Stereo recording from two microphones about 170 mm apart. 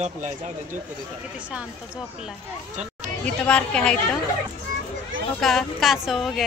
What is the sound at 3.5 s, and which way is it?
Speech, 5° left (ahead or behind).